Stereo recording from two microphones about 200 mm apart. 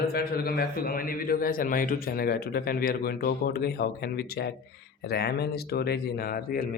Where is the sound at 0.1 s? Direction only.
50° left (ahead or behind).